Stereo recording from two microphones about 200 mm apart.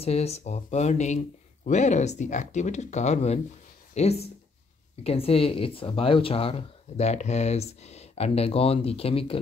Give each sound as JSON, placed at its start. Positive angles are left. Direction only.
{"t": 0.0, "sound": "speech", "side_deg": 30}